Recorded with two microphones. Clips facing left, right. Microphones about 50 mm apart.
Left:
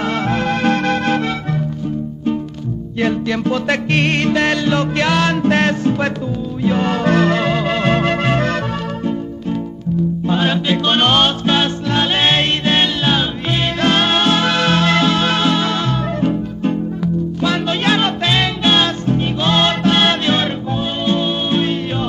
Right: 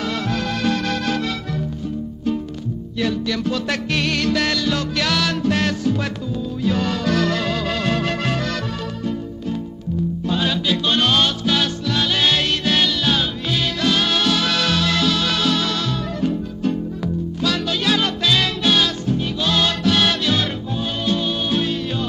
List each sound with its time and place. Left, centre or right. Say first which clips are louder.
0.0 s music: left 5 dB; left
3.0 s music: left 4 dB; left
10.2 s music: left 3 dB; left